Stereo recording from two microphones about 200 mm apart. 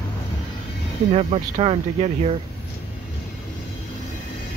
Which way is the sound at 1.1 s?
30° right (ahead or behind).